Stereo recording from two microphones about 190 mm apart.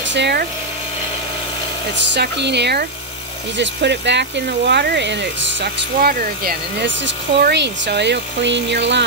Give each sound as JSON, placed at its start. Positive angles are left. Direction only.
{"t": 0.1, "sound": "speech", "side_deg": -60}
{"t": 2.0, "sound": "speech", "side_deg": -65}
{"t": 5.9, "sound": "speech", "side_deg": -50}
{"t": 7.1, "sound": "speech", "side_deg": -65}